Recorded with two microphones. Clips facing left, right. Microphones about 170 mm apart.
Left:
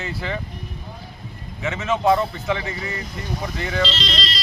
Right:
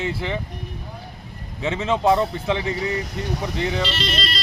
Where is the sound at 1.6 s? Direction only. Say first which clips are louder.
Right 1 dB; 30° right (ahead or behind).